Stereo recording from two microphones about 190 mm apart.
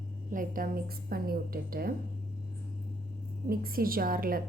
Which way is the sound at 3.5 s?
50° right (ahead or behind).